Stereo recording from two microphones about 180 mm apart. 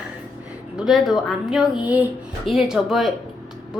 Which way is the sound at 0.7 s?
Centre (ahead or behind).